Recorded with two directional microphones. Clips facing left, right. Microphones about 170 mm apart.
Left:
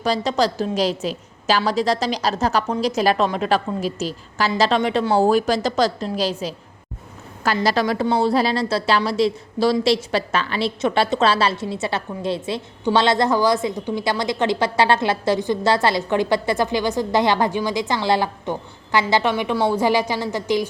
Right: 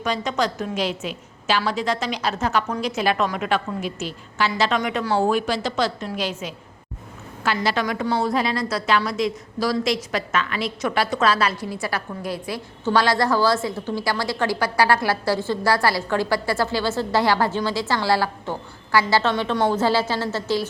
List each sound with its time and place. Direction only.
0.0 s a woman's voice: 35° left (ahead or behind); by 20.7 s 15° left (ahead or behind)